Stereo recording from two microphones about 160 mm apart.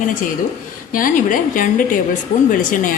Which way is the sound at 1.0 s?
55° left (ahead or behind).